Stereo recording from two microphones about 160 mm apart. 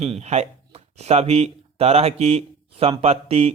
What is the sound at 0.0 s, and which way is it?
Speech, 45° right (ahead or behind).